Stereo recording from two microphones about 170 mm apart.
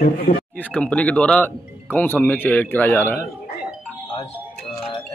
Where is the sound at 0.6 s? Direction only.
5° left (ahead or behind).